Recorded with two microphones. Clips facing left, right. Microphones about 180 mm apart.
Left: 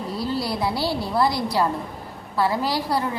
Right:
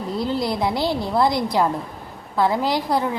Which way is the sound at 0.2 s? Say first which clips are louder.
Right 3 dB; 20° right (ahead or behind).